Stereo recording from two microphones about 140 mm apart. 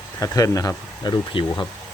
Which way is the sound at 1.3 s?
35° left (ahead or behind).